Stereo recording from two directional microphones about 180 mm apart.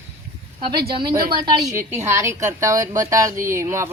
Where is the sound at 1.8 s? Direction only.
15° right (ahead or behind).